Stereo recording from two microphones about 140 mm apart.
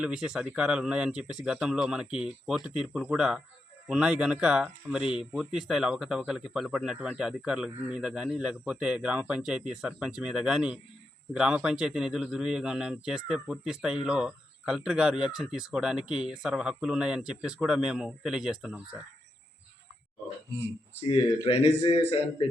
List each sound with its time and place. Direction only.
0.0 s a man's voice: 5° right (ahead or behind)
21.4 s a man's voice: 45° left (ahead or behind)